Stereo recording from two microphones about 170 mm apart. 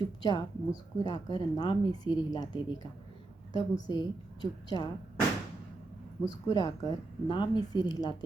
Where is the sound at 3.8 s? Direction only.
25° left (ahead or behind).